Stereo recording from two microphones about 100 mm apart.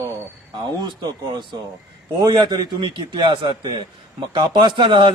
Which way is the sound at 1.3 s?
50° right (ahead or behind).